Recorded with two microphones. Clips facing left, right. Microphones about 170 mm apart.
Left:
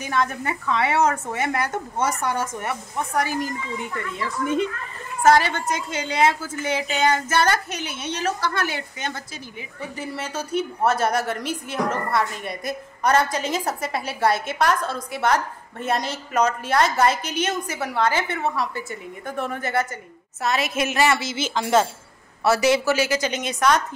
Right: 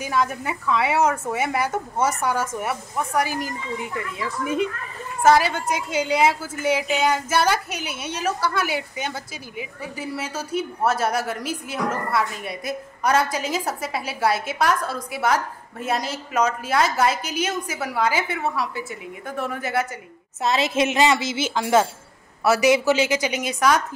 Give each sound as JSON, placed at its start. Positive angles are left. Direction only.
{"t": 0.0, "sound": "a woman's voice", "side_deg": -5}
{"t": 20.4, "sound": "a woman's voice", "side_deg": -25}